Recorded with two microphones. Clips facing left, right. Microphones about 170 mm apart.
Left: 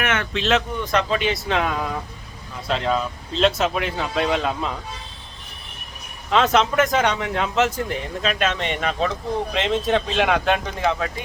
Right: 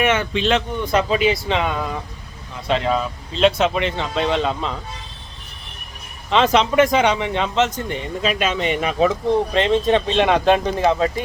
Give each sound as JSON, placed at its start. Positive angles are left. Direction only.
{"t": 0.0, "sound": "speech", "side_deg": 0}
{"t": 6.3, "sound": "speech", "side_deg": 0}
{"t": 9.5, "sound": "speech", "side_deg": 0}
{"t": 10.2, "sound": "speech", "side_deg": -30}